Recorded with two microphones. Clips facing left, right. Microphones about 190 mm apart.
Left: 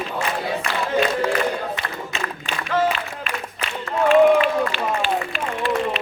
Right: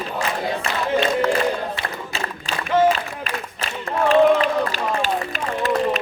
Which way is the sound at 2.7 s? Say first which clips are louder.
Right 4 dB; 35° right (ahead or behind).